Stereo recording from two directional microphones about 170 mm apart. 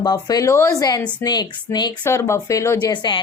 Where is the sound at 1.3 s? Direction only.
25° left (ahead or behind).